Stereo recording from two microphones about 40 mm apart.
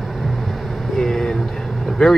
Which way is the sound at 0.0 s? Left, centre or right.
Centre.